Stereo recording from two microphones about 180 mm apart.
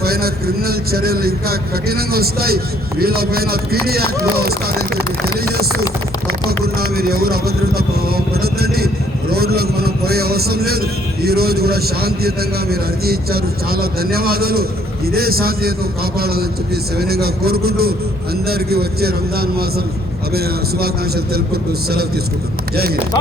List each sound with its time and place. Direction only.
0.0 s speech: 55° right (ahead or behind)
6.7 s speech: 60° right (ahead or behind)